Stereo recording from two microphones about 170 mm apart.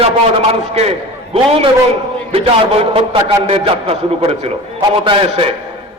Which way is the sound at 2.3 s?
35° right (ahead or behind).